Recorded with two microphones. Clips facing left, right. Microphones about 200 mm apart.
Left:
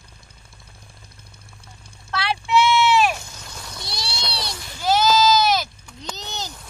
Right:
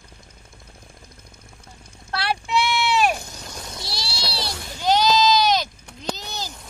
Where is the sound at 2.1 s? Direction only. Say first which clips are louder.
Left 3 dB; 40° right (ahead or behind).